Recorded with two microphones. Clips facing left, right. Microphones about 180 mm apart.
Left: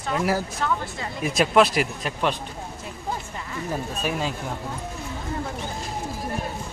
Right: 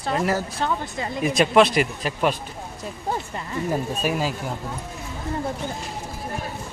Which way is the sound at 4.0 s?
10° right (ahead or behind).